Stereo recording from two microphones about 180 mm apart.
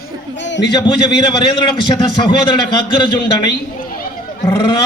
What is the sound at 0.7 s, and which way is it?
A man's voice, 25° left (ahead or behind).